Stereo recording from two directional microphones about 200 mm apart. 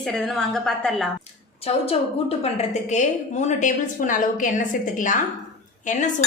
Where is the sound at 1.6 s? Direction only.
30° left (ahead or behind).